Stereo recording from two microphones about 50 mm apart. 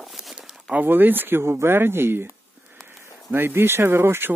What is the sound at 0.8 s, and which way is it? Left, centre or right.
Speech, right.